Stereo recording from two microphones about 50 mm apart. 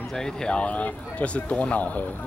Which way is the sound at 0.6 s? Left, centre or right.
Left.